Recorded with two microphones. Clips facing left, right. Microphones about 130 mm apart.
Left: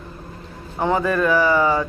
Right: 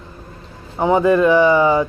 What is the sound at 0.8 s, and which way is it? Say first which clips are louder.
A man's voice: right 6 dB; 20° right (ahead or behind).